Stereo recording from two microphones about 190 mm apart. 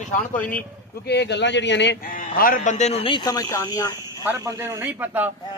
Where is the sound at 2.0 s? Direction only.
50° left (ahead or behind); by 4.2 s 15° left (ahead or behind).